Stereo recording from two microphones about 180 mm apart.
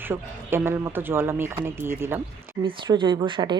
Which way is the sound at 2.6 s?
25° right (ahead or behind).